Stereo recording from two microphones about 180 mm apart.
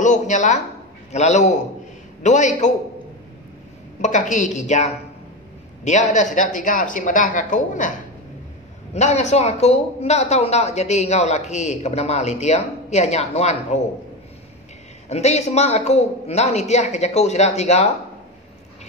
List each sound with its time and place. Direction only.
0.0 s speech: 40° left (ahead or behind)
4.0 s speech: 45° left (ahead or behind)
8.9 s speech: 40° left (ahead or behind)
15.0 s speech: 35° left (ahead or behind)